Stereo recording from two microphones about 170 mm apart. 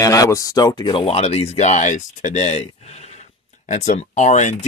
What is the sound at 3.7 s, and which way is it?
Speech, 45° left (ahead or behind).